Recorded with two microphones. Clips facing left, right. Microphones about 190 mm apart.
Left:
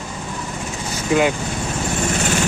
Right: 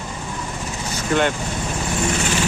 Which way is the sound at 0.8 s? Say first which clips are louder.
Left 2 dB; 10° left (ahead or behind).